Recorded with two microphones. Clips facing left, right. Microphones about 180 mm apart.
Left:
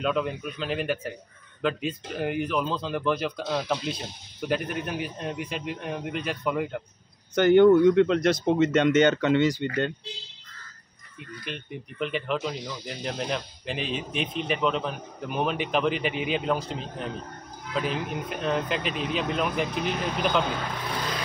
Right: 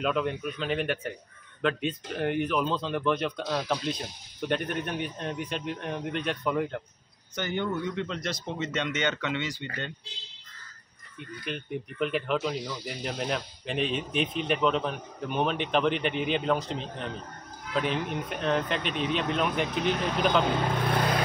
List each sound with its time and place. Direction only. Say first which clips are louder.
0.0 s speech: left 1 dB; centre (ahead or behind)
7.3 s speech: left 14 dB; 60° left (ahead or behind); by 9.7 s 40° left (ahead or behind)
11.1 s speech: right 1 dB; centre (ahead or behind)
20.8 s vehicle: right 5 dB; 55° right (ahead or behind)